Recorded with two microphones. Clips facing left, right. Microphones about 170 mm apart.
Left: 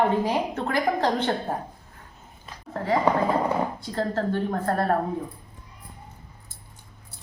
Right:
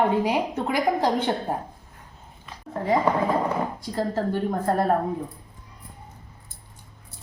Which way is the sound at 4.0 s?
10° right (ahead or behind).